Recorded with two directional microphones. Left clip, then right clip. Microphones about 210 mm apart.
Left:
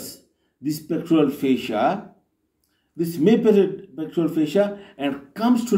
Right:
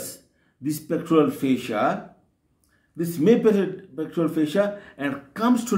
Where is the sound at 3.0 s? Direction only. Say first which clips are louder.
Even; 15° right (ahead or behind).